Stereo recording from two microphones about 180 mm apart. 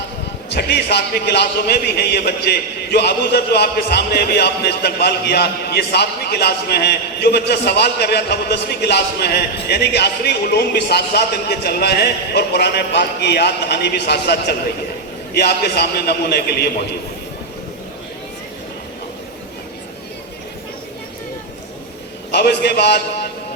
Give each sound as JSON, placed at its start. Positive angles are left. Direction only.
{"t": 0.5, "sound": "a man's voice", "side_deg": 65}
{"t": 22.3, "sound": "a man's voice", "side_deg": 65}